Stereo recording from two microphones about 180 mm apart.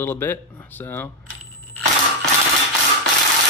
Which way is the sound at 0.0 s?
10° left (ahead or behind).